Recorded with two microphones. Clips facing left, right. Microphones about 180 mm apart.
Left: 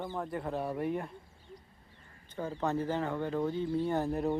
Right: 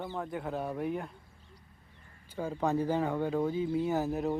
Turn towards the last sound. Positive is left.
turn(degrees=-5)  # may be behind; listen again after turning